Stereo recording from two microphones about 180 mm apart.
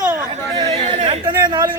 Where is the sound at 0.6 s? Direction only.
35° right (ahead or behind).